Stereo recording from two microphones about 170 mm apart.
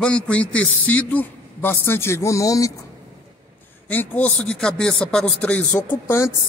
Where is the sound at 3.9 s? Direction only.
10° left (ahead or behind).